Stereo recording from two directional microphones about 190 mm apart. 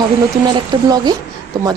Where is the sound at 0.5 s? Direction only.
20° right (ahead or behind).